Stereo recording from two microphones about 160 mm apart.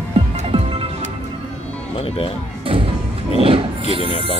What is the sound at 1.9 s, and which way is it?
Music, 35° left (ahead or behind).